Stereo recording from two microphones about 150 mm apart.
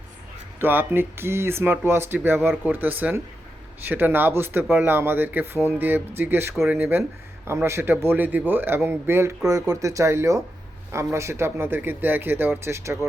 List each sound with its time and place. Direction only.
0.6 s speech: 15° right (ahead or behind)